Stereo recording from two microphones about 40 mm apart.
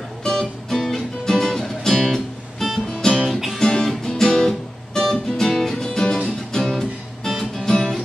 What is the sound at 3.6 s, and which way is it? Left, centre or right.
Music, centre.